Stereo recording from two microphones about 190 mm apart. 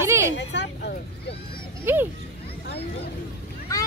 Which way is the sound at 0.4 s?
65° left (ahead or behind).